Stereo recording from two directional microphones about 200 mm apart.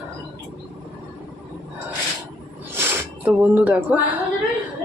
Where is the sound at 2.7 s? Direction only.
10° right (ahead or behind).